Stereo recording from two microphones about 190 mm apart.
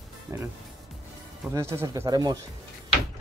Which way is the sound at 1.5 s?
15° right (ahead or behind).